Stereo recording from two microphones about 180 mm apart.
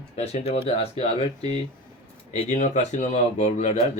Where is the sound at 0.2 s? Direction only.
35° left (ahead or behind).